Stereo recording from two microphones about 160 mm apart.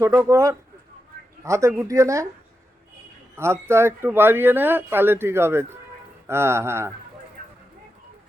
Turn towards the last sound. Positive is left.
turn(degrees=-15)  # may be behind; listen again after turning